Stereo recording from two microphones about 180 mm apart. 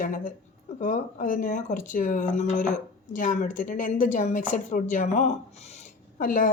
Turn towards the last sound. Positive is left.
turn(degrees=50)  # may be behind; listen again after turning